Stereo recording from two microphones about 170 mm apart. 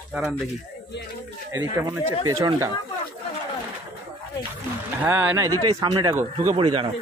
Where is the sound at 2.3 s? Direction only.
20° right (ahead or behind).